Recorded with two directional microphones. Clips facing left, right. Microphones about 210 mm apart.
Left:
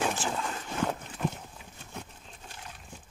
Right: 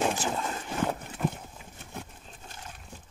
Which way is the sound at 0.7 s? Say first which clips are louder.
Right 1 dB; 5° right (ahead or behind).